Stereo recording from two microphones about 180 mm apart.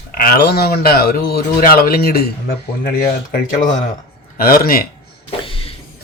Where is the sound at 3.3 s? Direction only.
50° left (ahead or behind).